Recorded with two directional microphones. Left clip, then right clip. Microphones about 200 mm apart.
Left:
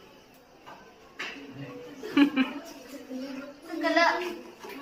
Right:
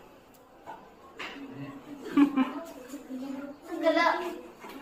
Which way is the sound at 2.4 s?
5° left (ahead or behind).